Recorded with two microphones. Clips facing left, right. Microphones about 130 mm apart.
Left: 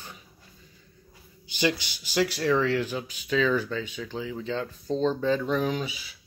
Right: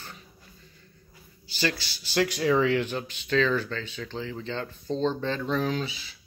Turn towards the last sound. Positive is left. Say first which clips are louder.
# even
turn(degrees=10)  # may be behind; listen again after turning